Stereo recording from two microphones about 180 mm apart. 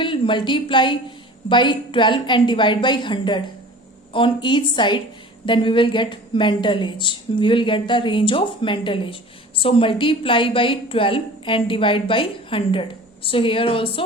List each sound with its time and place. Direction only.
0.0 s a woman's voice: 30° left (ahead or behind)